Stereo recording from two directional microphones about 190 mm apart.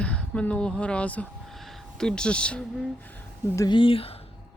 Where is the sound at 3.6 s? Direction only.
25° left (ahead or behind).